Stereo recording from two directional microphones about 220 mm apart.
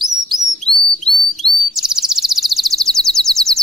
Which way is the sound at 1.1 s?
45° right (ahead or behind).